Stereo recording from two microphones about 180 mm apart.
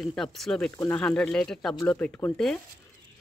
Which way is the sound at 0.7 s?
15° left (ahead or behind).